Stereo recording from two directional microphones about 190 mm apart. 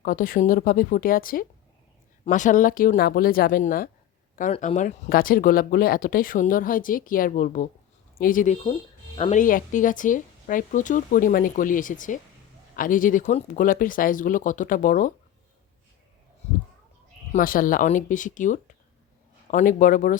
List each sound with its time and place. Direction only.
0.0 s speech: 45° left (ahead or behind)
4.5 s speech: 35° left (ahead or behind)
9.1 s speech: 30° left (ahead or behind)
9.4 s speech: 45° left (ahead or behind)
17.3 s speech: 45° left (ahead or behind)